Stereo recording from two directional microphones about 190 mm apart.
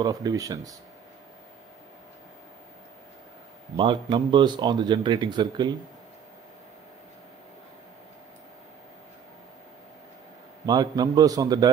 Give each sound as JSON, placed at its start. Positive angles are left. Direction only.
{"t": 0.0, "sound": "speech", "side_deg": -20}
{"t": 3.7, "sound": "speech", "side_deg": -25}
{"t": 10.6, "sound": "speech", "side_deg": -20}